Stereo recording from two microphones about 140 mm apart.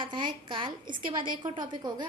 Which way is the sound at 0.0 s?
35° right (ahead or behind).